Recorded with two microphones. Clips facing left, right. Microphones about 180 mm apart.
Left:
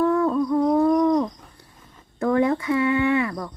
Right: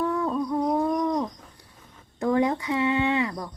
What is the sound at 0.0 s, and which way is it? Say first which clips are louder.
Humming: left 6 dB; 15° right (ahead or behind).